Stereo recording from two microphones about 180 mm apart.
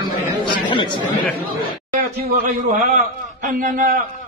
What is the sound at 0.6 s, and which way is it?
Chatter, 25° left (ahead or behind).